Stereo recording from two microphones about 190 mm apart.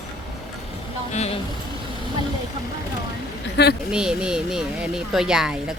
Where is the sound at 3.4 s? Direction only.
60° left (ahead or behind).